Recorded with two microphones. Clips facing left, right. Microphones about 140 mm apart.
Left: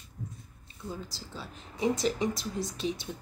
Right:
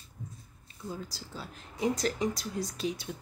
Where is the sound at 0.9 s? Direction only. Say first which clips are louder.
Even; centre (ahead or behind).